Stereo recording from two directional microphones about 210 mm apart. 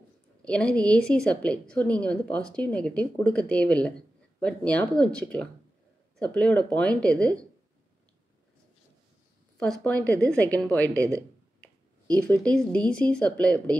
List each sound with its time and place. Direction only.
0.5 s a woman's voice: 5° left (ahead or behind)
9.6 s a woman's voice: 5° left (ahead or behind)
10.9 s speech: 15° right (ahead or behind)
12.2 s a woman's voice: 5° left (ahead or behind)